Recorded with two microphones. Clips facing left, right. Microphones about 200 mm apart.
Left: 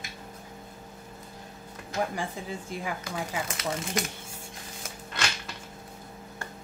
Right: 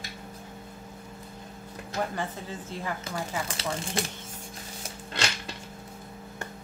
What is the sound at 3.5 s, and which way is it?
Speech, 30° right (ahead or behind).